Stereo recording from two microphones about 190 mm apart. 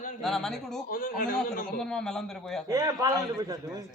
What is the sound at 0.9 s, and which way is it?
Speech, 50° left (ahead or behind).